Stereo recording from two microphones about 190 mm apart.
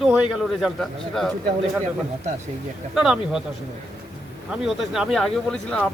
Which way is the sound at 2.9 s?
5° right (ahead or behind).